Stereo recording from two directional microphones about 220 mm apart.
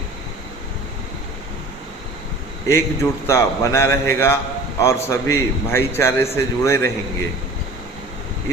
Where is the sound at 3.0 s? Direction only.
10° left (ahead or behind).